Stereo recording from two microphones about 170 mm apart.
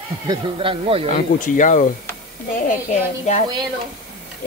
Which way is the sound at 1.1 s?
50° left (ahead or behind).